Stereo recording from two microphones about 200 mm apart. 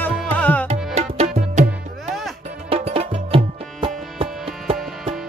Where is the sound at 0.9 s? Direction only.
35° right (ahead or behind).